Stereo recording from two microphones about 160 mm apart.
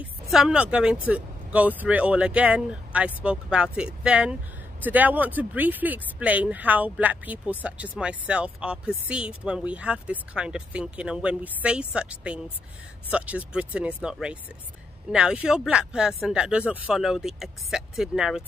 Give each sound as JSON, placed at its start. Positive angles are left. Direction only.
{"t": 0.0, "sound": "a woman's voice", "side_deg": -5}